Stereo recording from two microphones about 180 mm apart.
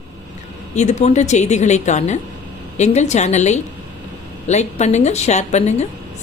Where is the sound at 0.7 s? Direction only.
40° left (ahead or behind).